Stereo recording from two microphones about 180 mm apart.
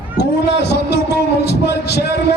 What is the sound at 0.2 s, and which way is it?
Speech, 70° left (ahead or behind).